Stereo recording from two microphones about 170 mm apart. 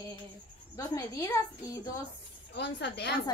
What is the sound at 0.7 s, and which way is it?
A woman's voice, 20° left (ahead or behind).